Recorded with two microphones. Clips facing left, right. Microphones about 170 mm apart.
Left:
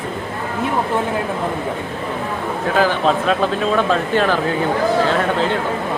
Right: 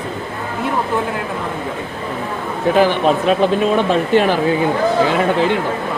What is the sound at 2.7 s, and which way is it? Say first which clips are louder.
Speech: right 2 dB; 15° right (ahead or behind).